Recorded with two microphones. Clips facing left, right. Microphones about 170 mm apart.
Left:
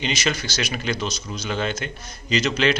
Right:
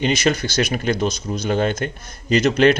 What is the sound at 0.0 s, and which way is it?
Speech, 55° right (ahead or behind).